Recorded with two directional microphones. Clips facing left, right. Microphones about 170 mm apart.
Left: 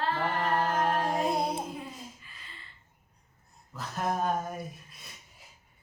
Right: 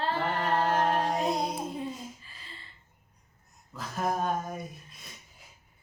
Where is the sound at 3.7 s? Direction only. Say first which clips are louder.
Right 1 dB; centre (ahead or behind).